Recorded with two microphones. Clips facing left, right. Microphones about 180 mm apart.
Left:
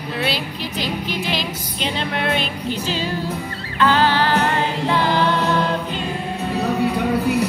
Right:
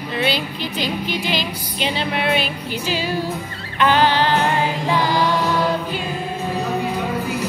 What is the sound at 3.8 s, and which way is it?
Music, 20° right (ahead or behind).